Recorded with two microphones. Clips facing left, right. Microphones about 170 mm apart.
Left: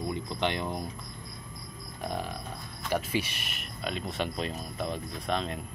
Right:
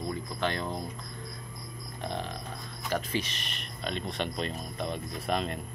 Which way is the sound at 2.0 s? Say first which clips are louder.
Left 1 dB; 10° left (ahead or behind).